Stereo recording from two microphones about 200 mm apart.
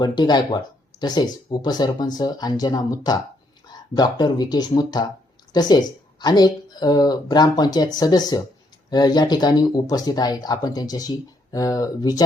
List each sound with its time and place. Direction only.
0.0 s speech: 20° left (ahead or behind)